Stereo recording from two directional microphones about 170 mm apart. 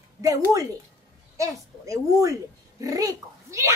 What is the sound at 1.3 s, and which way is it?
A child's voice, 20° right (ahead or behind).